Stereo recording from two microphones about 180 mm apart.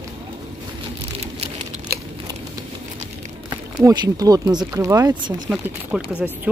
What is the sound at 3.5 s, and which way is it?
Speech, 20° right (ahead or behind).